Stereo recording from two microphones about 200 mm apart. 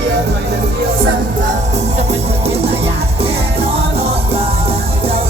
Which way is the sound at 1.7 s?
30° right (ahead or behind).